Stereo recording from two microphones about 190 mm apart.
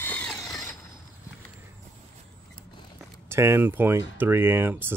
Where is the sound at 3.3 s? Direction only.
15° right (ahead or behind).